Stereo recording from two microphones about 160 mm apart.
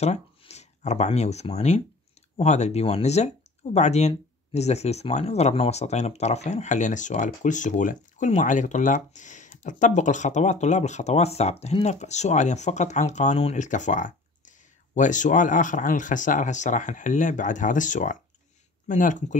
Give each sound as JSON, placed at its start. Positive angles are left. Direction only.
{"t": 0.0, "sound": "speech", "side_deg": 45}